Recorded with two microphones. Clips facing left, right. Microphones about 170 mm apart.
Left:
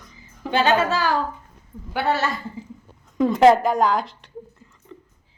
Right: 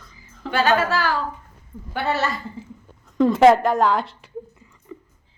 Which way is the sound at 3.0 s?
Centre (ahead or behind).